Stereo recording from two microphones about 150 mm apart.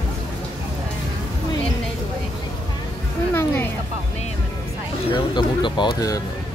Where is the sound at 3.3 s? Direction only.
15° left (ahead or behind).